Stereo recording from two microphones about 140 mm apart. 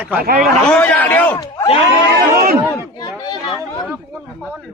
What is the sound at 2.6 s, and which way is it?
Chatter, 25° left (ahead or behind).